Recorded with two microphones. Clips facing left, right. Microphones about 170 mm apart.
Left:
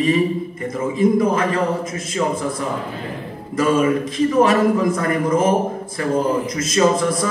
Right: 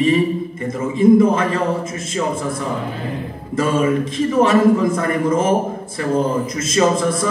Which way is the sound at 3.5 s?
25° right (ahead or behind).